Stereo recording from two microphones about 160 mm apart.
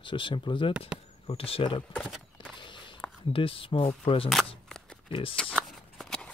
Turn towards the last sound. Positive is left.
turn(degrees=5)  # may be behind; listen again after turning